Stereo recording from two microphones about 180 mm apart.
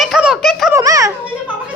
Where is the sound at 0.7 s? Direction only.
20° right (ahead or behind).